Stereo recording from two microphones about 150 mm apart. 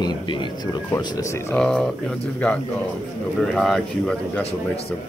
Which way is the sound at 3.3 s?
Centre (ahead or behind).